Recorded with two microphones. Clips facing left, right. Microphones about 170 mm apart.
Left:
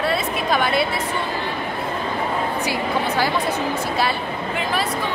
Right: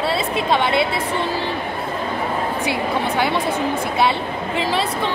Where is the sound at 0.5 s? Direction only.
25° right (ahead or behind).